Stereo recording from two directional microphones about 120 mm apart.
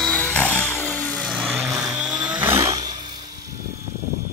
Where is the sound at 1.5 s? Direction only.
30° right (ahead or behind).